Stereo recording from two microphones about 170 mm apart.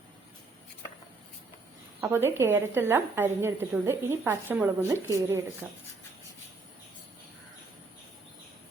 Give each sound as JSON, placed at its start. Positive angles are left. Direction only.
{"t": 2.0, "sound": "a woman's voice", "side_deg": -15}